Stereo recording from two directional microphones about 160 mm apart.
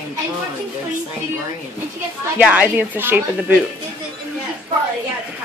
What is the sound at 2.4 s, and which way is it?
A woman's voice, 10° right (ahead or behind).